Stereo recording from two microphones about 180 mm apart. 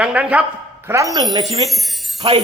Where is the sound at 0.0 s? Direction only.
5° right (ahead or behind).